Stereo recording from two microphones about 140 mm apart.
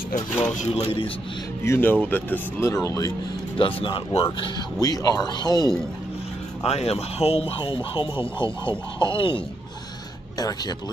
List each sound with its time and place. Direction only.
0.6 s a man's voice: 45° left (ahead or behind)
1.6 s speech: 15° left (ahead or behind)
3.5 s speech: 40° left (ahead or behind)
4.7 s speech: 25° left (ahead or behind)
6.6 s speech: 45° left (ahead or behind)